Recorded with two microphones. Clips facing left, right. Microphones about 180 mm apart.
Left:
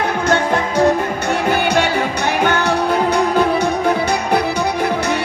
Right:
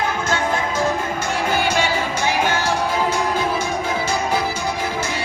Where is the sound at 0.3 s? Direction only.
60° left (ahead or behind).